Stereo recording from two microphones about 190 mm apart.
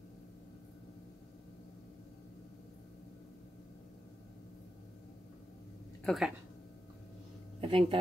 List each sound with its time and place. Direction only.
6.0 s speech: centre (ahead or behind)
7.6 s speech: 30° right (ahead or behind)